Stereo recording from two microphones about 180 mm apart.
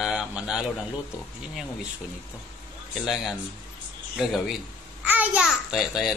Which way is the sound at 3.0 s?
Centre (ahead or behind).